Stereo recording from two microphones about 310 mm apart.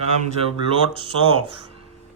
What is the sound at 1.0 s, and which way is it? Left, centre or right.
Mantra, centre.